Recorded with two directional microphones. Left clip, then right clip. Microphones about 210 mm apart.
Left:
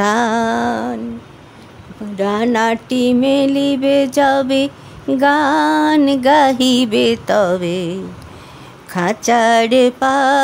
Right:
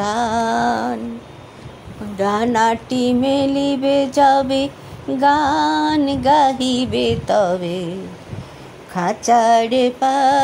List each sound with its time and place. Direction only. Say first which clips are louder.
0.0 s a sound: left 3 dB; 30° left (ahead or behind)
2.1 s mantra: left 1 dB; 25° left (ahead or behind)
5.1 s music: left 2 dB; 30° left (ahead or behind)
8.9 s mantra: even; 25° left (ahead or behind)